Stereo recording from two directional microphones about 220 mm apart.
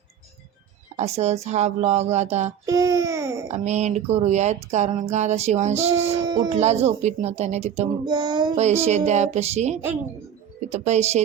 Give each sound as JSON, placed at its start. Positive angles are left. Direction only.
{"t": 0.9, "sound": "speech", "side_deg": -30}
{"t": 2.6, "sound": "babbling", "side_deg": -15}
{"t": 3.5, "sound": "speech", "side_deg": -30}
{"t": 6.2, "sound": "speech", "side_deg": -20}
{"t": 6.6, "sound": "speech", "side_deg": -30}
{"t": 8.5, "sound": "speech", "side_deg": -30}